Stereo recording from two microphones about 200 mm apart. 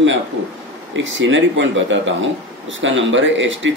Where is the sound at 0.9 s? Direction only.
70° right (ahead or behind).